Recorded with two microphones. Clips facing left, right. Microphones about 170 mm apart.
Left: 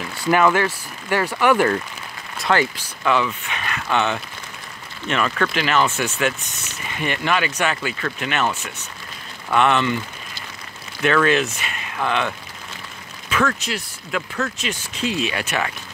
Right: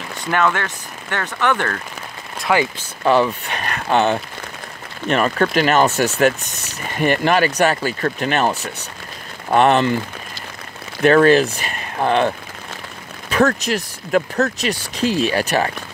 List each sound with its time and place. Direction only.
0.2 s speech: 5° left (ahead or behind)
2.5 s speech: 10° right (ahead or behind)
3.0 s speech: 35° right (ahead or behind)